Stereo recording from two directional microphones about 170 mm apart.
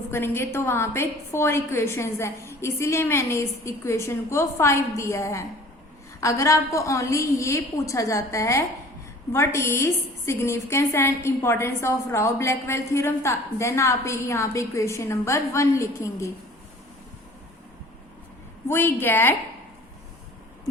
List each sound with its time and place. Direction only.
0.1 s a woman's voice: 15° left (ahead or behind)
18.7 s a woman's voice: 15° left (ahead or behind)